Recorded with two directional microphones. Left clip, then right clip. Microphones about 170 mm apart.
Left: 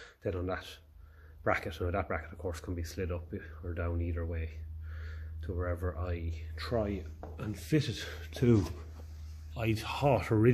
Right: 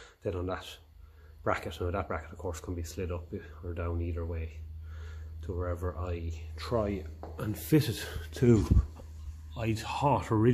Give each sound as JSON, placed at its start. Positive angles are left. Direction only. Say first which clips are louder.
{"t": 0.0, "sound": "speech", "louder": "right 1 dB", "side_deg": -5}
{"t": 7.3, "sound": "speech", "louder": "right 4 dB", "side_deg": -40}
{"t": 9.5, "sound": "speech", "louder": "right 1 dB", "side_deg": -5}